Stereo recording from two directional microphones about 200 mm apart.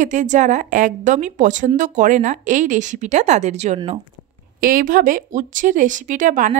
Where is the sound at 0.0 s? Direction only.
40° right (ahead or behind).